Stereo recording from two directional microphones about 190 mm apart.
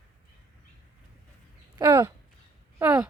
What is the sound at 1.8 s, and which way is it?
Speech, 15° right (ahead or behind).